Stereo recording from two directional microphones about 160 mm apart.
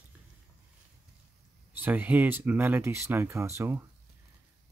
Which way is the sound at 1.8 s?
10° right (ahead or behind).